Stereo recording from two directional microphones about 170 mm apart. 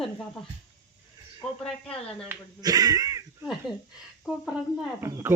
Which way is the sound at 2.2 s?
20° right (ahead or behind).